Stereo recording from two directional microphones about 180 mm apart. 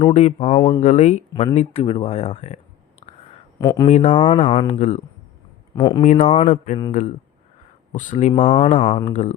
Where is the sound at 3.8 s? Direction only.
45° left (ahead or behind).